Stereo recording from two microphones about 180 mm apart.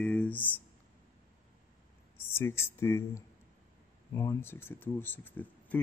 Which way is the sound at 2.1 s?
15° left (ahead or behind).